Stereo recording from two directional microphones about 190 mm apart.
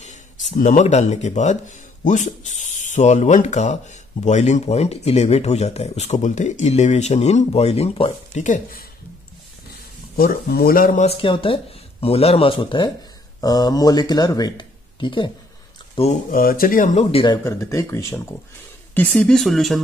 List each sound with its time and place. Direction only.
0.0 s speech: 40° left (ahead or behind)
10.1 s speech: 50° left (ahead or behind); by 15.3 s 25° left (ahead or behind)
16.3 s speech: 50° left (ahead or behind)
17.1 s speech: 25° left (ahead or behind)
17.5 s speech: 15° left (ahead or behind)